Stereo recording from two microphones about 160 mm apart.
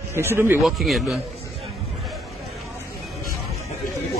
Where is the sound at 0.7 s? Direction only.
Centre (ahead or behind).